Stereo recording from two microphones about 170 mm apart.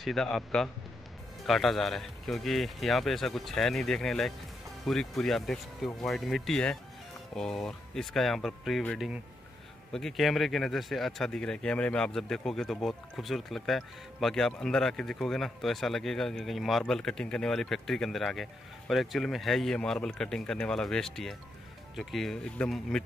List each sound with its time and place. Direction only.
0.0 s speech: centre (ahead or behind)